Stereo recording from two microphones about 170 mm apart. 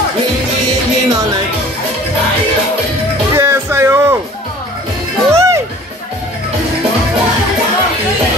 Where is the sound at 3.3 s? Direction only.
15° right (ahead or behind).